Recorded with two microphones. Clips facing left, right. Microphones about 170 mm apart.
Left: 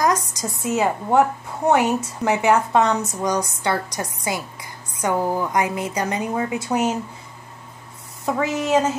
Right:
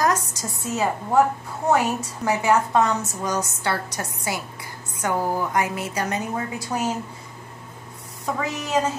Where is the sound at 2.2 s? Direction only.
20° left (ahead or behind).